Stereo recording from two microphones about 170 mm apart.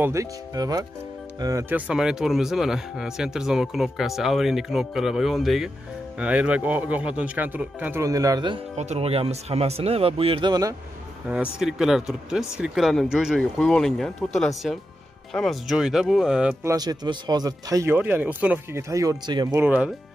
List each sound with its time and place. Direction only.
0.0 s speech: 20° right (ahead or behind)
8.7 s speech: 40° right (ahead or behind); by 10.8 s 20° right (ahead or behind)
11.5 s speech: 5° right (ahead or behind)
16.6 s speech: 25° right (ahead or behind)
19.6 s speech: 10° right (ahead or behind)